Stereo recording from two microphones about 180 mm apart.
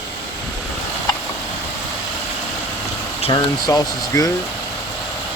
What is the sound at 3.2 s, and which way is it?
Speech, 25° left (ahead or behind).